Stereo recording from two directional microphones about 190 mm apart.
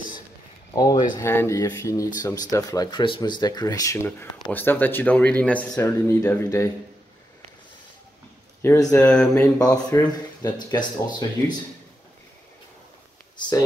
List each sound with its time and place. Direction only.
0.7 s speech: 20° left (ahead or behind)
8.9 s speech: 5° left (ahead or behind)
9.8 s speech: 15° left (ahead or behind)